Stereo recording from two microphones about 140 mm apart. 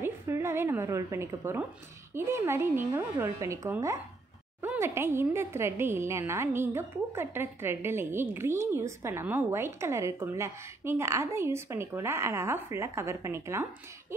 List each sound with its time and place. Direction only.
0.0 s a woman's voice: 20° right (ahead or behind)